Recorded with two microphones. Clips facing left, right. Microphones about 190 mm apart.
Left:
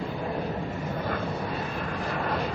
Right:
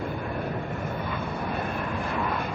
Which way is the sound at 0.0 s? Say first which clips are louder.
Even; 55° right (ahead or behind).